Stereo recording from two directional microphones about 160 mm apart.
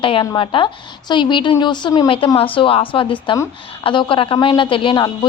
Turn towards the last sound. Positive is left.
turn(degrees=30)  # may be behind; listen again after turning